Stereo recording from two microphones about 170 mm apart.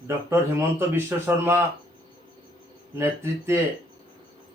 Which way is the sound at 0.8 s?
15° right (ahead or behind).